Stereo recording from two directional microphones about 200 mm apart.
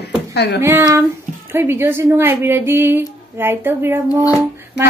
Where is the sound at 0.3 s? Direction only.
55° left (ahead or behind).